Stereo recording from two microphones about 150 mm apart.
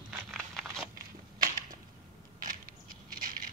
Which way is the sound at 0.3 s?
Centre (ahead or behind).